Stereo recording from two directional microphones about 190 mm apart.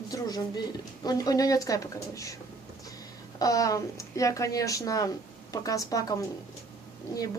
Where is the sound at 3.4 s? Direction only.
20° left (ahead or behind).